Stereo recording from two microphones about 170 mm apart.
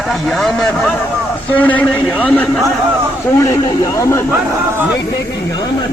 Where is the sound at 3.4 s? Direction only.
20° left (ahead or behind).